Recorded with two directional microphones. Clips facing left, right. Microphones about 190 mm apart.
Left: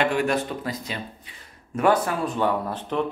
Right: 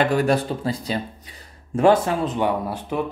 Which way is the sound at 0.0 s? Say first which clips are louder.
Right 3 dB; 35° right (ahead or behind).